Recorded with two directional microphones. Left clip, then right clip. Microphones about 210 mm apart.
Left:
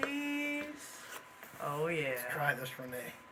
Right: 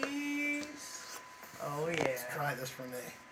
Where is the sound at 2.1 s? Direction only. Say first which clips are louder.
Left 3 dB; 10° left (ahead or behind).